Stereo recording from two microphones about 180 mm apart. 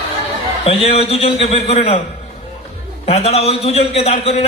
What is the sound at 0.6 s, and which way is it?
A man's voice, 35° left (ahead or behind).